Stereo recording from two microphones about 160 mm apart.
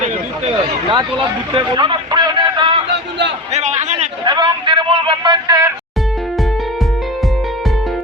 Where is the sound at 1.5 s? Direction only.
30° right (ahead or behind).